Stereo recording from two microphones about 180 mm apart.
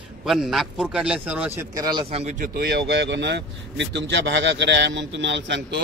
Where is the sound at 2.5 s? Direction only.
65° right (ahead or behind).